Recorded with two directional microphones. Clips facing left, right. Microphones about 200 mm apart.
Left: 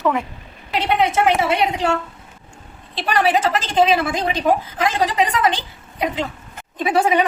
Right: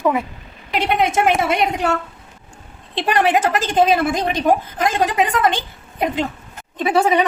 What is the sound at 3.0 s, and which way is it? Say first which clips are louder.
A woman's voice: right 1 dB; 50° right (ahead or behind).